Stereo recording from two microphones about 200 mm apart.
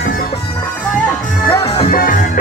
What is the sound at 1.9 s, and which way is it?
Music, 45° left (ahead or behind).